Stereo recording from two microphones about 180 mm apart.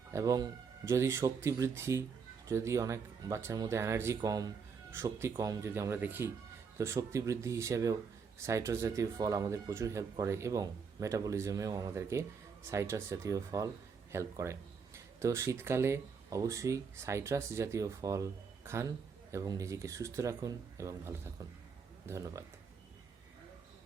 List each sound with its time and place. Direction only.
0.1 s speech: 15° right (ahead or behind)